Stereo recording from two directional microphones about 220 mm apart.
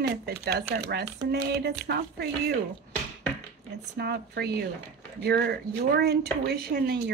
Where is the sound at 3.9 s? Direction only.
45° right (ahead or behind).